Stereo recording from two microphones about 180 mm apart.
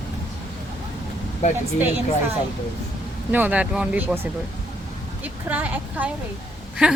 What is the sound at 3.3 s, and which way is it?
Speech, 10° right (ahead or behind).